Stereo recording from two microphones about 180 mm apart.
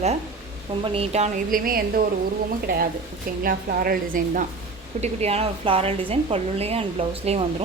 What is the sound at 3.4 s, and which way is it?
A woman's voice, 50° right (ahead or behind).